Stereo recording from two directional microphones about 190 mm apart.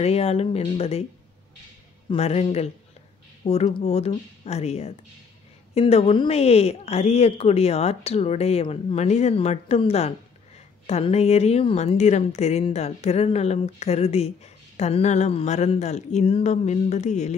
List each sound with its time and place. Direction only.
0.0 s a woman's voice: 30° left (ahead or behind)
2.0 s a woman's voice: 35° left (ahead or behind)